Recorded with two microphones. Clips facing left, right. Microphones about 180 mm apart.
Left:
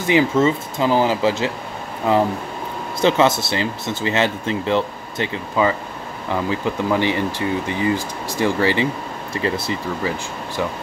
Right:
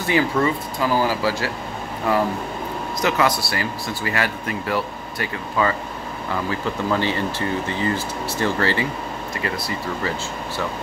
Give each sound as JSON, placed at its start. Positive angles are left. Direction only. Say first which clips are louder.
{"t": 0.0, "sound": "speech", "louder": "left 4 dB", "side_deg": 20}
{"t": 9.3, "sound": "speech", "louder": "left 6 dB", "side_deg": 25}